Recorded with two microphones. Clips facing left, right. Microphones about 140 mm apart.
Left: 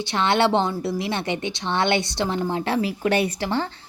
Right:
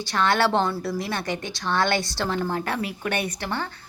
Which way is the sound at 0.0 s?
25° left (ahead or behind).